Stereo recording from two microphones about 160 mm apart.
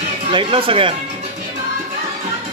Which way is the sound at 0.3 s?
35° right (ahead or behind).